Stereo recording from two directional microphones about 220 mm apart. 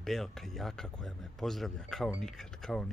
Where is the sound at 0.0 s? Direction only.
Centre (ahead or behind).